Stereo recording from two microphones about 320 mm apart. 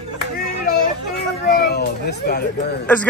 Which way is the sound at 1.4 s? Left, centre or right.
Left.